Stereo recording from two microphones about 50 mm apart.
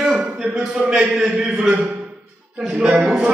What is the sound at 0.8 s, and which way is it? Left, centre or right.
Speech, centre.